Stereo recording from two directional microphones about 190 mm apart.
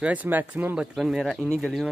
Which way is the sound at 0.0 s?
10° right (ahead or behind).